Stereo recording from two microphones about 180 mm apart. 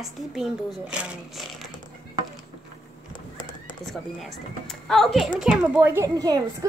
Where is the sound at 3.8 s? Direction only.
Centre (ahead or behind).